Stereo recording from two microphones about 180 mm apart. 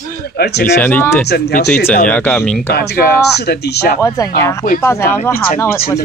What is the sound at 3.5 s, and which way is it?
Speech, 65° left (ahead or behind).